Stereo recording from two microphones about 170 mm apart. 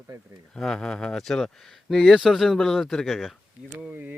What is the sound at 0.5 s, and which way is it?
Speech, 5° left (ahead or behind).